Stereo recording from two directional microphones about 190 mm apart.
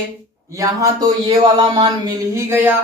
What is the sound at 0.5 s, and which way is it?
Speech, 15° right (ahead or behind).